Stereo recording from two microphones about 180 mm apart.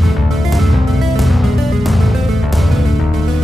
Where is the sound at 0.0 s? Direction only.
Centre (ahead or behind).